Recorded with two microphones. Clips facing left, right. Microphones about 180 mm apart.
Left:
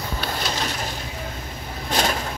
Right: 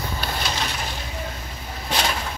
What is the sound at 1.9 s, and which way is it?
Bird, 45° left (ahead or behind).